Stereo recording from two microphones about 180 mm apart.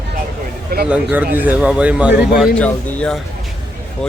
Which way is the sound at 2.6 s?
5° left (ahead or behind).